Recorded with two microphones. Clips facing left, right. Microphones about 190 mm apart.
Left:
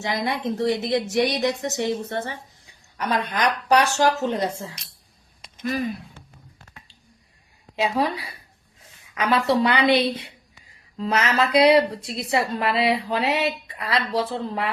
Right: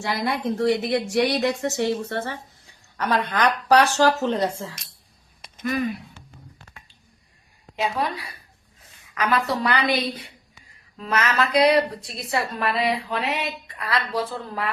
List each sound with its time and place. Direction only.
0.0 s a woman's voice: 20° left (ahead or behind)
7.9 s speech: 30° left (ahead or behind)